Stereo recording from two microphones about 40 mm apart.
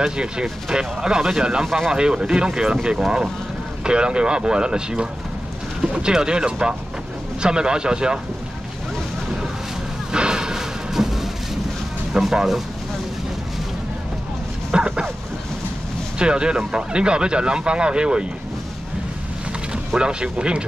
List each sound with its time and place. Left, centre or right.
0.0 s speech: centre
10.1 s a sound: centre
12.1 s speech: centre
14.7 s a sound: right
16.2 s speech: right
19.7 s speech: right